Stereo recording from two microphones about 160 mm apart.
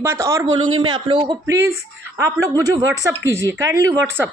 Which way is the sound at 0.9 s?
30° right (ahead or behind).